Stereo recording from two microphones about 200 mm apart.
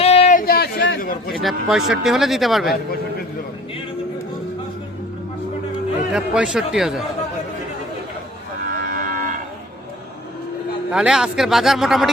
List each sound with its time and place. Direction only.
0.0 s a sound: 30° left (ahead or behind); by 0.9 s 60° left (ahead or behind)
1.0 s speech: 45° left (ahead or behind)
1.4 s speech: centre (ahead or behind)
6.1 s speech: 5° right (ahead or behind)
8.7 s cattle: 45° right (ahead or behind)
10.9 s speech: 5° right (ahead or behind)